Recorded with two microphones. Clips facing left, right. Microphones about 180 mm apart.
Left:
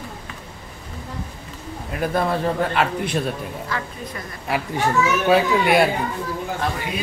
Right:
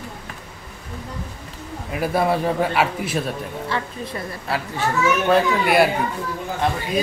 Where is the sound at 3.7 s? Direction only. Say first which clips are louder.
Right 3 dB; 30° right (ahead or behind).